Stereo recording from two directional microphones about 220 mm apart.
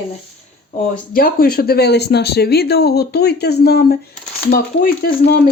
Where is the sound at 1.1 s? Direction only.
40° left (ahead or behind).